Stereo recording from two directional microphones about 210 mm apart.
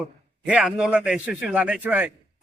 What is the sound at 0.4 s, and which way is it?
A man's voice, 5° right (ahead or behind).